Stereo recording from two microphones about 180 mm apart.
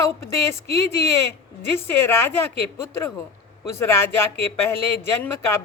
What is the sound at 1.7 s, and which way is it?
Speech, 15° left (ahead or behind).